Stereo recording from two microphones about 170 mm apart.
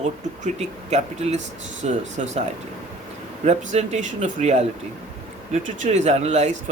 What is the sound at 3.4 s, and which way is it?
Speech, 40° right (ahead or behind).